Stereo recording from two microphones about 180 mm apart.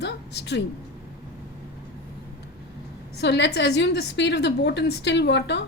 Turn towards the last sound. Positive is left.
turn(degrees=70)  # may be behind; listen again after turning